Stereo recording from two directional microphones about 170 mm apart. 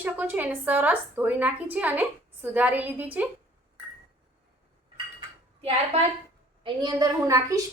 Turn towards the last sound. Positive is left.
turn(degrees=-20)  # may be behind; listen again after turning